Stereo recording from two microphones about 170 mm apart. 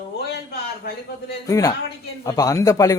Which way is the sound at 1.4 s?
20° left (ahead or behind).